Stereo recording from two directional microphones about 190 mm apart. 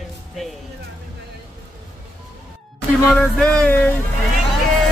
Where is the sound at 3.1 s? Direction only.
5° left (ahead or behind).